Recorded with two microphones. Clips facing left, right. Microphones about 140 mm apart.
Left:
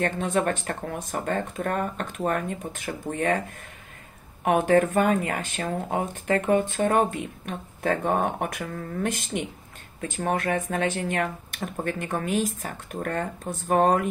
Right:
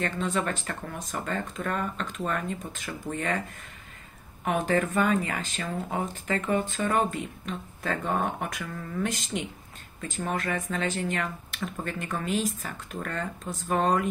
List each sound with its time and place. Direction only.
0.0 s speech: 50° left (ahead or behind)
4.5 s speech: 55° left (ahead or behind)